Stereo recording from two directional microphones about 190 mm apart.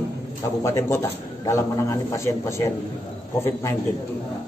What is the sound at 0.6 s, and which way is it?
A man's voice, 15° left (ahead or behind).